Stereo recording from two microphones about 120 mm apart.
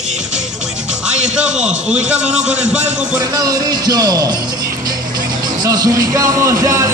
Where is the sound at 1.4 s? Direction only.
5° right (ahead or behind).